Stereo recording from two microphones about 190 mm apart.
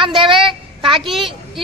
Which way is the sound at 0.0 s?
25° right (ahead or behind).